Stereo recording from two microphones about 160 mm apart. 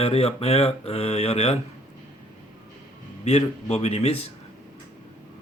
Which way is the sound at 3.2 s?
40° left (ahead or behind).